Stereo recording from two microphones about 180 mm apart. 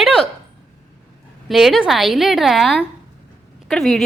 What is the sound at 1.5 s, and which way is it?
A woman's voice, centre (ahead or behind).